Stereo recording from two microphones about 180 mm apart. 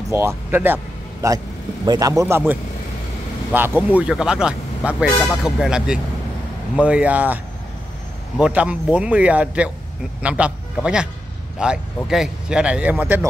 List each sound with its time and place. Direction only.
0.1 s speech: 15° right (ahead or behind)
8.4 s speech: 5° right (ahead or behind)